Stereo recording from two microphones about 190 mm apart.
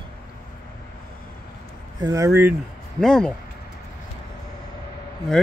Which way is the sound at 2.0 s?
15° right (ahead or behind).